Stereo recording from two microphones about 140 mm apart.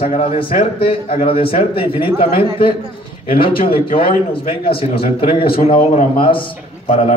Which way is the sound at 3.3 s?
40° left (ahead or behind).